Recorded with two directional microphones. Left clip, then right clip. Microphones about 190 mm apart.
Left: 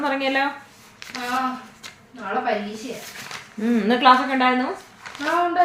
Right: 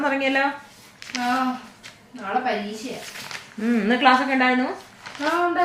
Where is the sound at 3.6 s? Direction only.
20° left (ahead or behind).